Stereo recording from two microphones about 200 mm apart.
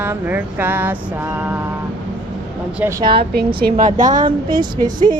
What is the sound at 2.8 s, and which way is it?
Speech, 15° right (ahead or behind).